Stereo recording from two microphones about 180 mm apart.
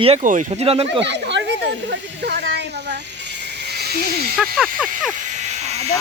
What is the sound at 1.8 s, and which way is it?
Speech, 70° right (ahead or behind).